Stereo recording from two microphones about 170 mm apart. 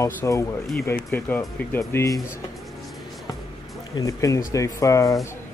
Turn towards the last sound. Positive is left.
turn(degrees=20)  # may be behind; listen again after turning